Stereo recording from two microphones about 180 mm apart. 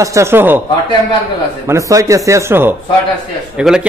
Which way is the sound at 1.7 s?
15° right (ahead or behind).